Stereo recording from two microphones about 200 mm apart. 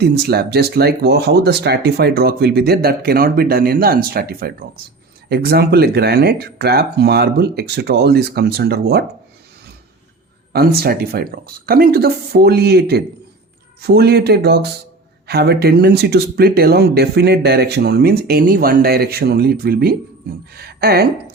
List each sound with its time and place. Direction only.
0.0 s speech: 55° right (ahead or behind)
10.5 s speech: 50° right (ahead or behind)